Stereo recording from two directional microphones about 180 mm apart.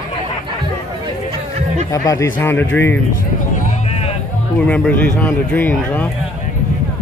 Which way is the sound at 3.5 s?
35° left (ahead or behind).